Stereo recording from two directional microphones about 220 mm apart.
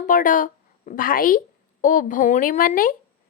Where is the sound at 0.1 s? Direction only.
35° left (ahead or behind).